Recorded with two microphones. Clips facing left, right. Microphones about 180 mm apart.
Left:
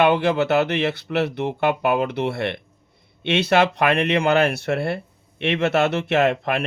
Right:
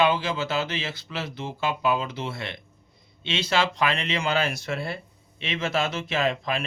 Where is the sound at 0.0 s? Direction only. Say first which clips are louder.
Left 6 dB; 65° left (ahead or behind).